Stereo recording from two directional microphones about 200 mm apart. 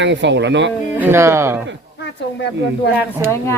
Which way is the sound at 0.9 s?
10° right (ahead or behind).